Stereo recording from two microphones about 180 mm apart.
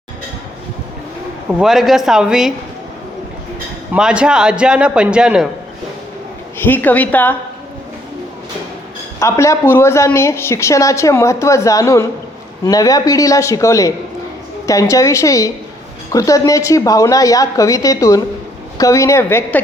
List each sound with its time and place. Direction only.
1.5 s a man's voice: 5° right (ahead or behind)
3.9 s a man's voice: 5° right (ahead or behind)
6.6 s a woman's voice: 10° left (ahead or behind)
9.2 s a woman's voice: 15° left (ahead or behind)